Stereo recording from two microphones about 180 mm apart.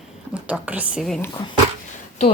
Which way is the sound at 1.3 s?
25° left (ahead or behind).